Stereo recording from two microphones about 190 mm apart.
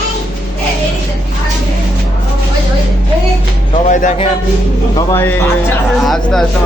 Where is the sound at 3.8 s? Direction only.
40° left (ahead or behind).